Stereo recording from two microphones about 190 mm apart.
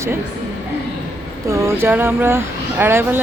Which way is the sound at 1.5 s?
15° right (ahead or behind).